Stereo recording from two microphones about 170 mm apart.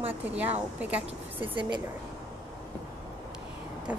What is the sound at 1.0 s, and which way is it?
Speech, 30° right (ahead or behind).